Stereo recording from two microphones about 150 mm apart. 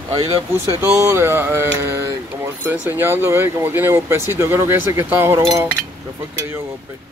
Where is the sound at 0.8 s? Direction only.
15° right (ahead or behind).